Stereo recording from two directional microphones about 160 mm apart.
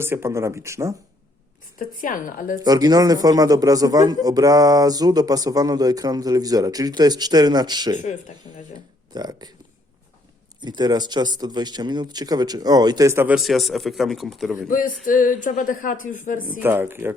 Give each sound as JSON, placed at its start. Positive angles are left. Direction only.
{"t": 0.0, "sound": "speech", "side_deg": -15}
{"t": 1.8, "sound": "a sound", "side_deg": 55}
{"t": 2.6, "sound": "a man's voice", "side_deg": -25}
{"t": 8.4, "sound": "speech", "side_deg": 50}
{"t": 9.1, "sound": "a man's voice", "side_deg": -25}
{"t": 10.6, "sound": "a man's voice", "side_deg": -25}
{"t": 13.3, "sound": "speech", "side_deg": 0}
{"t": 14.7, "sound": "a sound", "side_deg": 60}
{"t": 16.6, "sound": "speech", "side_deg": -10}